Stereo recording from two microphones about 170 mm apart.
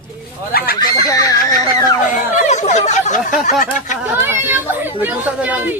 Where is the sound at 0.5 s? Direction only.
60° left (ahead or behind).